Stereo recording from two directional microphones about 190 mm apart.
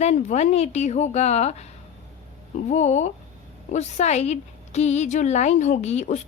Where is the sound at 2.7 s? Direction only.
40° left (ahead or behind).